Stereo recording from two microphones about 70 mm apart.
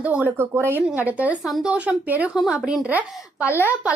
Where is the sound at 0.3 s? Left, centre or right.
Right.